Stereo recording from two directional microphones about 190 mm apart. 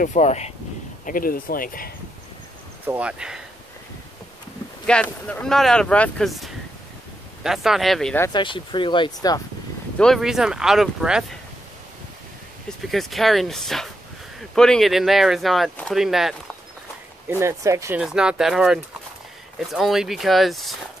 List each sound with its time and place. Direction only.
0.0 s speech: 35° left (ahead or behind)
1.0 s speech: 50° left (ahead or behind)
2.9 s speech: 5° right (ahead or behind)
4.8 s speech: 5° left (ahead or behind)
8.2 s speech: 25° left (ahead or behind)
9.9 s speech: centre (ahead or behind)
12.6 s speech: centre (ahead or behind)
17.3 s speech: 15° right (ahead or behind)
18.0 s speech: 5° right (ahead or behind)